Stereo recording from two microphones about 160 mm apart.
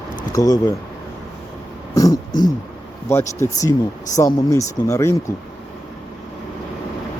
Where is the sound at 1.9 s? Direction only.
20° left (ahead or behind).